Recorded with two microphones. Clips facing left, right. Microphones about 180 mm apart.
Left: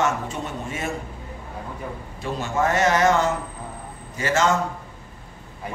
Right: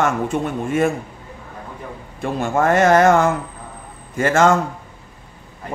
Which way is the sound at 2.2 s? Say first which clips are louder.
Right 5 dB; 55° right (ahead or behind).